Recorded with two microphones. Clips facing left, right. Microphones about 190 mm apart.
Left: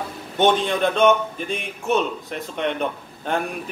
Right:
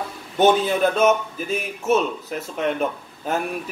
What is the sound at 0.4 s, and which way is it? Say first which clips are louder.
A man's voice: right 2 dB; 5° right (ahead or behind).